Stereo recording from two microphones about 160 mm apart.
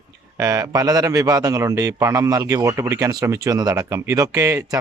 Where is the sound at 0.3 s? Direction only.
20° right (ahead or behind).